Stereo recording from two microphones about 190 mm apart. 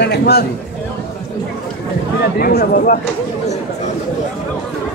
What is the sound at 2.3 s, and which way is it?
Speech, 50° left (ahead or behind).